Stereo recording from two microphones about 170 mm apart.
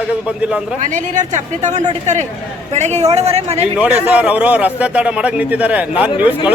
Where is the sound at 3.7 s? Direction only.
5° right (ahead or behind).